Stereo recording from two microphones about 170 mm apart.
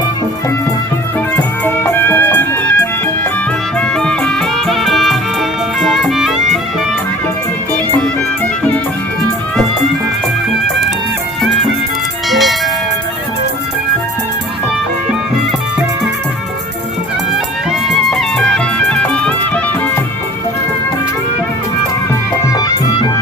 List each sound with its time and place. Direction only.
1.4 s music: 10° left (ahead or behind)
3.8 s music: 5° left (ahead or behind)
12.3 s music: centre (ahead or behind)
17.3 s music: centre (ahead or behind)
22.5 s music: 20° left (ahead or behind)